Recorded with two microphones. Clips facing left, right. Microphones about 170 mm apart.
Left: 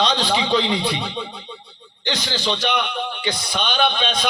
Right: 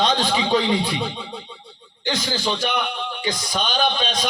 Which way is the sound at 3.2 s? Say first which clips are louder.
Right 2 dB; 40° right (ahead or behind).